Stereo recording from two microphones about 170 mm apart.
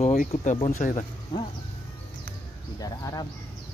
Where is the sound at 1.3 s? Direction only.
25° left (ahead or behind).